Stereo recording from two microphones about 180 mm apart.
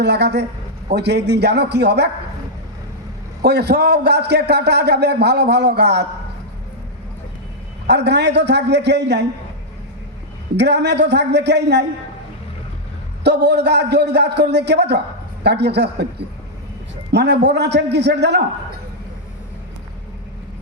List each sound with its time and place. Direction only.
0.0 s a man's voice: 70° right (ahead or behind)
3.4 s a man's voice: 65° right (ahead or behind)
7.9 s a man's voice: 75° right (ahead or behind)
10.6 s a man's voice: 70° right (ahead or behind)
13.2 s a man's voice: 70° right (ahead or behind)
17.1 s a man's voice: 70° right (ahead or behind)